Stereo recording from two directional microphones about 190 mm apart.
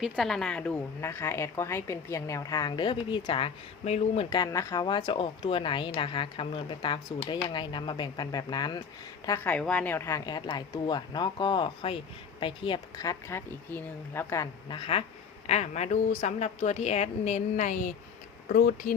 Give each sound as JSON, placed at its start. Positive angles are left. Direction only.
{"t": 0.0, "sound": "a woman's voice", "side_deg": 0}
{"t": 14.7, "sound": "a woman's voice", "side_deg": 30}
{"t": 18.4, "sound": "speech", "side_deg": 55}